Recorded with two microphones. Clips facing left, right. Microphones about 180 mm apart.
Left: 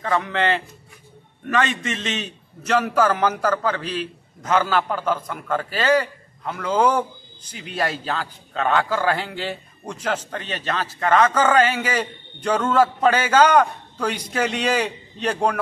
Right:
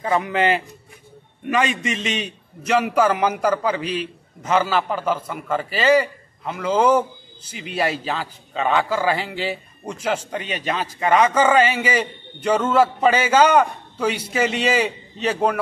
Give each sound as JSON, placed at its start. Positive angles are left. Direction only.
{"t": 0.0, "sound": "a man's voice", "side_deg": -15}